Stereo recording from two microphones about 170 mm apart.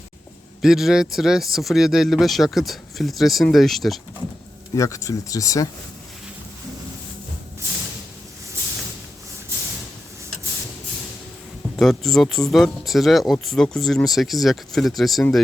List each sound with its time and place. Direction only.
0.6 s speech: centre (ahead or behind)
4.7 s speech: 20° left (ahead or behind)
11.8 s speech: centre (ahead or behind)